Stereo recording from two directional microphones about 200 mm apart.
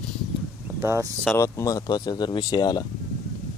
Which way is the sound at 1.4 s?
15° left (ahead or behind).